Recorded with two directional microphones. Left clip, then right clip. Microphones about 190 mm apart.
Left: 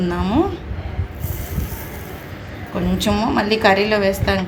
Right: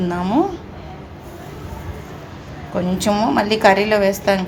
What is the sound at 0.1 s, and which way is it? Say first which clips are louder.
Speech: right 1 dB; 10° right (ahead or behind).